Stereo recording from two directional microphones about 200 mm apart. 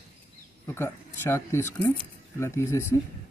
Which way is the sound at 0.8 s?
10° left (ahead or behind).